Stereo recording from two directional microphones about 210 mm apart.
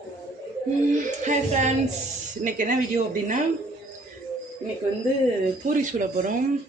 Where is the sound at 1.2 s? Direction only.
35° right (ahead or behind).